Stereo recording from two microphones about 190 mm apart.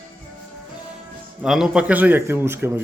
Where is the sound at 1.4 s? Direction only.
Centre (ahead or behind).